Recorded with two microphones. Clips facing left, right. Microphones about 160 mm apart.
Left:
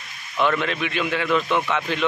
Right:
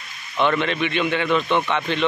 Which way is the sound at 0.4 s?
Centre (ahead or behind).